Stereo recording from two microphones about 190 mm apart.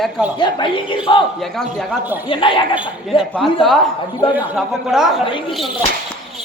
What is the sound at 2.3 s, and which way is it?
Speech, 25° left (ahead or behind).